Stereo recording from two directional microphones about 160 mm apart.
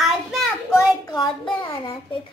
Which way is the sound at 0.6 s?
20° left (ahead or behind).